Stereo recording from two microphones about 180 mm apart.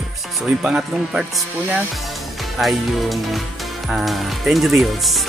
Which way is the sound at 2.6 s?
Centre (ahead or behind).